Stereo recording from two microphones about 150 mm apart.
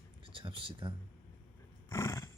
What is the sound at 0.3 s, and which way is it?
Speech, 35° right (ahead or behind).